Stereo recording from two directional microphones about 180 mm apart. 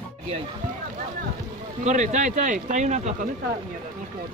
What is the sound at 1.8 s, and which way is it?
Speech, 40° right (ahead or behind).